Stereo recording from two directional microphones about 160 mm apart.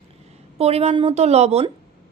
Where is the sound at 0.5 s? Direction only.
40° right (ahead or behind).